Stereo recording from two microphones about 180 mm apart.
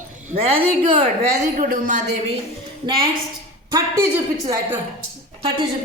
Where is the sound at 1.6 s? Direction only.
45° right (ahead or behind).